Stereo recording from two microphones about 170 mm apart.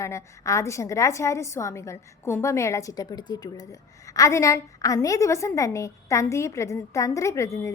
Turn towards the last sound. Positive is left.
turn(degrees=20)  # may be behind; listen again after turning